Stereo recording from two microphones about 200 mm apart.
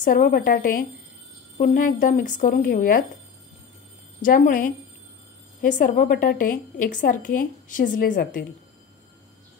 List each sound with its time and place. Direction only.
0.0 s speech: 45° left (ahead or behind)
4.2 s a woman's voice: 40° left (ahead or behind)